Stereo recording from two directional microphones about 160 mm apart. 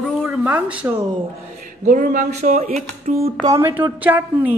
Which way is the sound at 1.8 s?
55° right (ahead or behind).